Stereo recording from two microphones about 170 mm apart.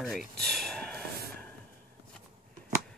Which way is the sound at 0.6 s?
5° left (ahead or behind).